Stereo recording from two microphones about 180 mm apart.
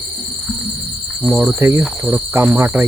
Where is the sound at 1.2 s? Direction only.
Centre (ahead or behind).